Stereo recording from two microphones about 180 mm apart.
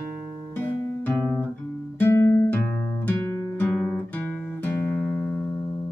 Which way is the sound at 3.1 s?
10° left (ahead or behind).